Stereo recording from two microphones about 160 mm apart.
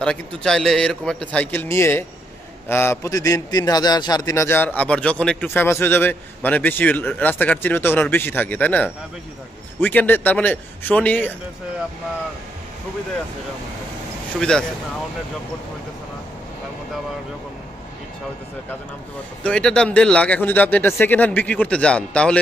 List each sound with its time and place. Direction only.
0.0 s a man's voice: 5° left (ahead or behind)
14.5 s speech: 5° left (ahead or behind)
19.4 s a man's voice: 5° left (ahead or behind)